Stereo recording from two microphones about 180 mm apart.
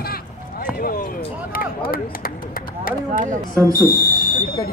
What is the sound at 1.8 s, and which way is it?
Speech, 55° left (ahead or behind).